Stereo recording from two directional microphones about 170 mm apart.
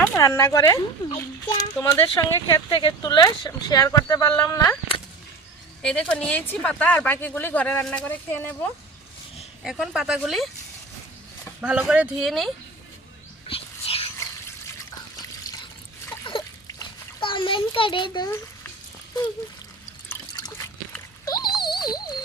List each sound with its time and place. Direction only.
0.0 s speech: 15° left (ahead or behind)
5.8 s speech: 5° left (ahead or behind)
9.6 s speech: centre (ahead or behind)
11.6 s speech: 5° right (ahead or behind)
13.5 s whispering: 35° left (ahead or behind)
16.2 s a sound: 25° left (ahead or behind)
20.1 s liquid: 20° left (ahead or behind)
21.2 s dog: 25° left (ahead or behind)
21.7 s a sound: 25° left (ahead or behind)